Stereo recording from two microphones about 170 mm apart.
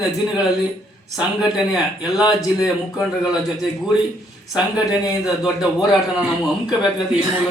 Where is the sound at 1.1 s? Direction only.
Centre (ahead or behind).